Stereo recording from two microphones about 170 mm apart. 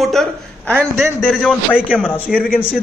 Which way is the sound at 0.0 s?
Centre (ahead or behind).